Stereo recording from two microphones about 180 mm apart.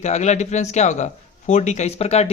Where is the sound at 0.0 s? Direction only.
40° left (ahead or behind).